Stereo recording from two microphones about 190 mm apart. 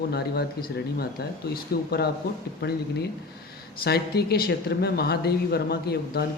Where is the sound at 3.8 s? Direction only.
55° left (ahead or behind).